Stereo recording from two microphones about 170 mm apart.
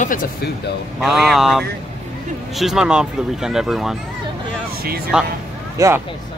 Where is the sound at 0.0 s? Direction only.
50° left (ahead or behind).